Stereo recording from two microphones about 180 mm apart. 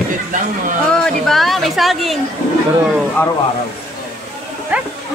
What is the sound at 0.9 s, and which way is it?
Speech, 5° left (ahead or behind).